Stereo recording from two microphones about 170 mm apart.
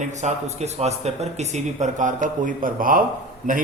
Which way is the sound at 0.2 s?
40° right (ahead or behind).